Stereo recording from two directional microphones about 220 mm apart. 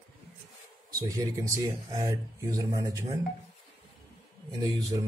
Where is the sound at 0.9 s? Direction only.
15° right (ahead or behind).